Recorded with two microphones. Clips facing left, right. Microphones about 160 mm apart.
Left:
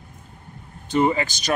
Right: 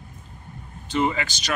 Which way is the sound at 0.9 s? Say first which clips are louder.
Left 4 dB; 40° left (ahead or behind).